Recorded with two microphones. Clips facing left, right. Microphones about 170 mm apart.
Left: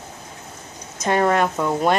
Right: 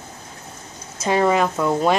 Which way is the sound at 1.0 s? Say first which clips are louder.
Right 1 dB; 5° right (ahead or behind).